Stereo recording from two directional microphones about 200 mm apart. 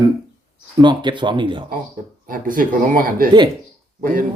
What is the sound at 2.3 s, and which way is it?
Speech, 45° right (ahead or behind).